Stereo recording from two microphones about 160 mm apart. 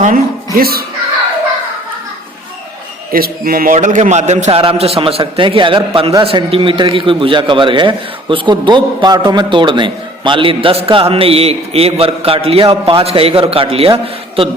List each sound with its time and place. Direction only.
0.0 s speech: 60° right (ahead or behind)
3.1 s a man's voice: 65° right (ahead or behind); by 14.5 s 35° right (ahead or behind)